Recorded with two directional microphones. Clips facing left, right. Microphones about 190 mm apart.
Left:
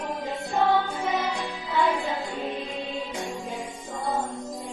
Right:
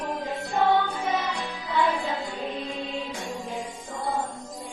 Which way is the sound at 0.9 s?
25° left (ahead or behind).